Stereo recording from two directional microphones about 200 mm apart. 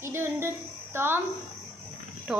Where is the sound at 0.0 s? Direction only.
10° right (ahead or behind).